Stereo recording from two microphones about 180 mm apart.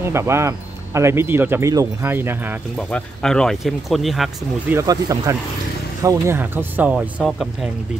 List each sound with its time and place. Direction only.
0.0 s speech: 15° right (ahead or behind)
2.9 s speech: 5° left (ahead or behind)
4.6 s speech: 15° right (ahead or behind)